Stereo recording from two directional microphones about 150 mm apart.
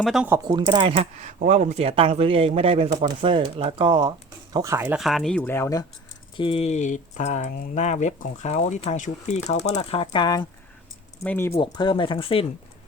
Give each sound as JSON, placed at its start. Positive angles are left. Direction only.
{"t": 0.0, "sound": "speech", "side_deg": 0}
{"t": 0.3, "sound": "speech", "side_deg": -20}
{"t": 0.5, "sound": "speech", "side_deg": -30}
{"t": 1.2, "sound": "speech", "side_deg": -50}
{"t": 4.5, "sound": "speech", "side_deg": -20}
{"t": 4.9, "sound": "speech", "side_deg": 0}
{"t": 6.3, "sound": "speech", "side_deg": 35}
{"t": 11.2, "sound": "speech", "side_deg": 15}
{"t": 11.5, "sound": "speech", "side_deg": 30}